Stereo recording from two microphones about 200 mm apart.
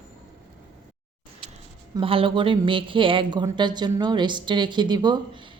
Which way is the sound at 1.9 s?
25° right (ahead or behind).